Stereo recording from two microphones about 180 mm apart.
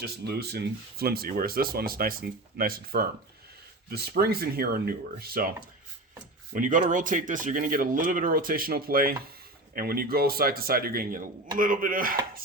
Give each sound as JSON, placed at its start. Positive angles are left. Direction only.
{"t": 0.0, "sound": "speech", "side_deg": -60}